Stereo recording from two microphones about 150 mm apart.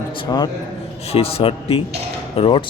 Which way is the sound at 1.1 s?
40° left (ahead or behind).